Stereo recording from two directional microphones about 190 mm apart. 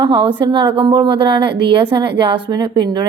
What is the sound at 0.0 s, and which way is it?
A woman's voice, 30° right (ahead or behind).